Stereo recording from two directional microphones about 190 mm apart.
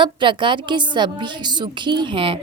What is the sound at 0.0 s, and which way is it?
A woman's voice, 25° right (ahead or behind).